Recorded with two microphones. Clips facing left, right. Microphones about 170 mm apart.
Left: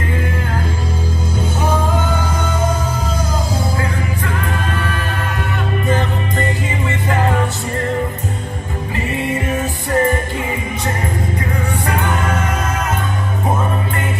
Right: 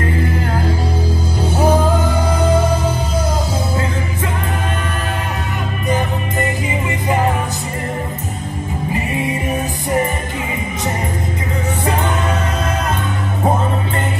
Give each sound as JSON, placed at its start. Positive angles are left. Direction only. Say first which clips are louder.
{"t": 9.5, "sound": "music", "louder": "even", "side_deg": -20}